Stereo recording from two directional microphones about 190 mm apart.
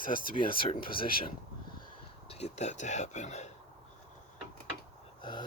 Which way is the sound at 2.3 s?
35° left (ahead or behind).